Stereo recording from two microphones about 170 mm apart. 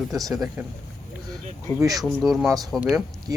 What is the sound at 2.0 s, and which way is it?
Speech, centre (ahead or behind).